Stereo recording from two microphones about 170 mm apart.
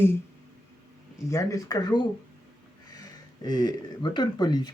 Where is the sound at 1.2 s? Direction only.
20° left (ahead or behind).